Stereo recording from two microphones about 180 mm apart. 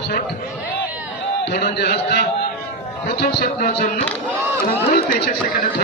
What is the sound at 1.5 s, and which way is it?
A man's voice, 65° left (ahead or behind).